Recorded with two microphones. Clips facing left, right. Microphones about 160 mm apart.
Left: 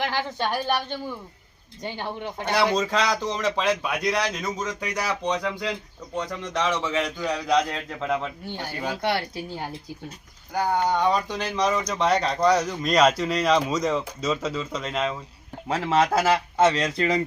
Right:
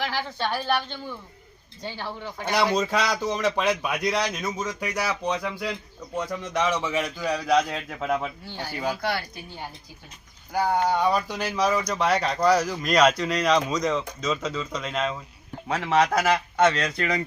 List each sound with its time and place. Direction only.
0.0 s a woman's voice: 20° left (ahead or behind)
2.7 s speech: 10° right (ahead or behind)
10.5 s speech: 5° right (ahead or behind)
15.7 s speech: 25° left (ahead or behind)